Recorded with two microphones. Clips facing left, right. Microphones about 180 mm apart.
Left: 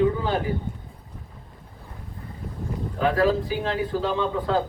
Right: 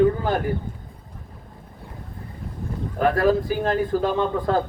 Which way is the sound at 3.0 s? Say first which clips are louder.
Right 2 dB; 50° right (ahead or behind).